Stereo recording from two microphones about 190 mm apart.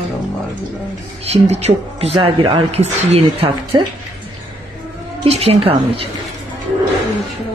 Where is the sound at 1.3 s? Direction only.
35° right (ahead or behind).